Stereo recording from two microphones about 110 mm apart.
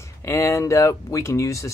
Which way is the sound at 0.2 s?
25° left (ahead or behind).